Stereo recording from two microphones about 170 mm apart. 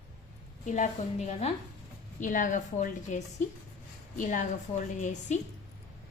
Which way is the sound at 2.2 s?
50° left (ahead or behind).